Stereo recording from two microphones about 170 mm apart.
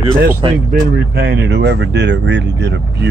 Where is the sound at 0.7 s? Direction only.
70° right (ahead or behind); by 3.1 s 90° right.